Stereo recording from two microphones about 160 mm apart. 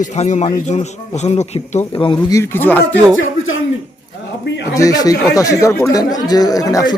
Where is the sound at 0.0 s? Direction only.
50° left (ahead or behind).